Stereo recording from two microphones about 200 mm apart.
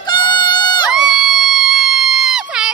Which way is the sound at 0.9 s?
5° right (ahead or behind).